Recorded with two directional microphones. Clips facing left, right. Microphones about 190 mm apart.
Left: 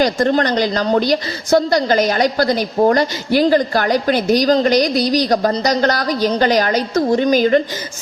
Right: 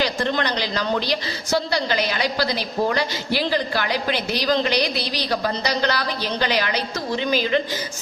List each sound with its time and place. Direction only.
0.0 s a woman's voice: 45° left (ahead or behind)